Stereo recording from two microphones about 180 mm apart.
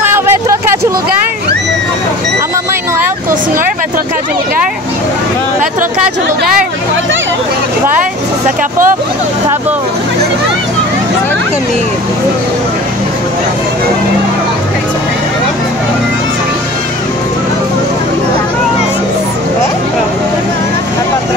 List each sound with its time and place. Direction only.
8.5 s speech: 45° right (ahead or behind)